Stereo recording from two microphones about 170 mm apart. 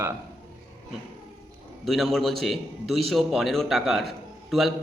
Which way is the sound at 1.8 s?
Centre (ahead or behind).